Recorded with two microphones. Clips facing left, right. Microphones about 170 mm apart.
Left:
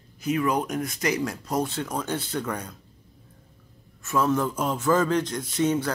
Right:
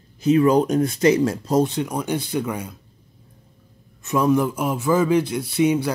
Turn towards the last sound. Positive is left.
turn(degrees=-10)  # may be behind; listen again after turning